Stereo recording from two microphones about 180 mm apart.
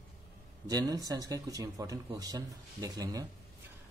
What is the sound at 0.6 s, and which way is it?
Speech, 20° right (ahead or behind).